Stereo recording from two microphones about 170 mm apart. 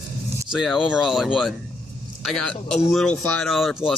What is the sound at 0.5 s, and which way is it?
Speech, centre (ahead or behind).